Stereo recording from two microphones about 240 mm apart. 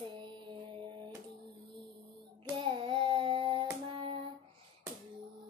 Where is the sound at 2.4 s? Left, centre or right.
Right.